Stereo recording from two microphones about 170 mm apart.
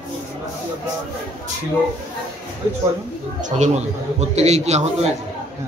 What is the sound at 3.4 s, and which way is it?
A man's voice, 45° right (ahead or behind).